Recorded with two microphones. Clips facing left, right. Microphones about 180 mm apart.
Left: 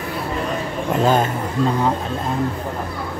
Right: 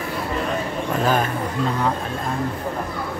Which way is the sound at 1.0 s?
25° left (ahead or behind).